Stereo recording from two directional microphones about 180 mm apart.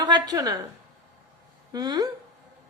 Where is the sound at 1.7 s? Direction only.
20° right (ahead or behind).